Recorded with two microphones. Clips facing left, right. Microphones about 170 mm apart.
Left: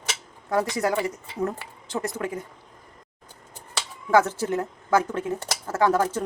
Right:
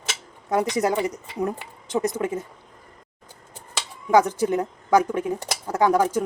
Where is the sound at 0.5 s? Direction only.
20° right (ahead or behind).